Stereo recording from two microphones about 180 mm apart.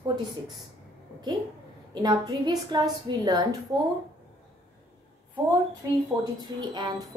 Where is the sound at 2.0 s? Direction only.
20° right (ahead or behind).